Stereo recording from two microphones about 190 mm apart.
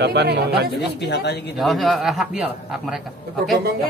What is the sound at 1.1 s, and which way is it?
Speech, 60° left (ahead or behind).